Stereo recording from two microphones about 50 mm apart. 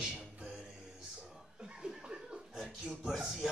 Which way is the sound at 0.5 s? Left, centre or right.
Centre.